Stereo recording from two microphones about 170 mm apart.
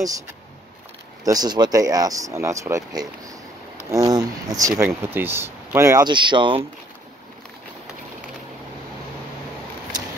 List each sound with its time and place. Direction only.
1.2 s speech: 20° right (ahead or behind)